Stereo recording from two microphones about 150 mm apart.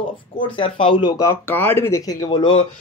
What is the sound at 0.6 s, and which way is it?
Speech, 35° left (ahead or behind).